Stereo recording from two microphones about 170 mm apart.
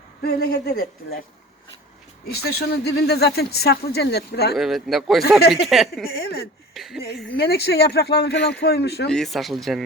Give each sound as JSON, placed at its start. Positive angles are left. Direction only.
{"t": 0.2, "sound": "speech", "side_deg": 70}
{"t": 2.3, "sound": "speech", "side_deg": 65}
{"t": 4.5, "sound": "speech", "side_deg": 0}
{"t": 5.4, "sound": "speech", "side_deg": 70}
{"t": 5.6, "sound": "speech", "side_deg": 0}
{"t": 7.0, "sound": "speech", "side_deg": 70}
{"t": 9.0, "sound": "speech", "side_deg": 0}